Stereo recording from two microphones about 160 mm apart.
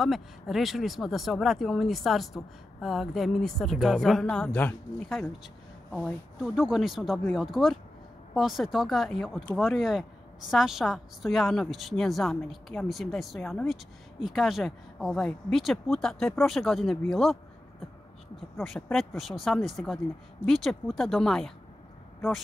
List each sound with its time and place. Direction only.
0.0 s speech: centre (ahead or behind)
5.9 s speech: centre (ahead or behind)
18.6 s speech: centre (ahead or behind)